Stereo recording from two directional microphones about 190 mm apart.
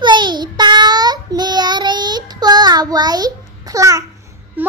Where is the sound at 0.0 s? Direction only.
25° right (ahead or behind).